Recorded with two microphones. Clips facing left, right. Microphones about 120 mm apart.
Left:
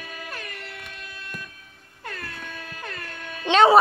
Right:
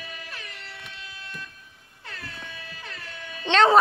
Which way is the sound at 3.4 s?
10° left (ahead or behind).